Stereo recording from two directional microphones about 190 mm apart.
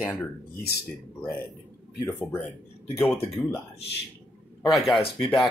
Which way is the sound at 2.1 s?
10° left (ahead or behind).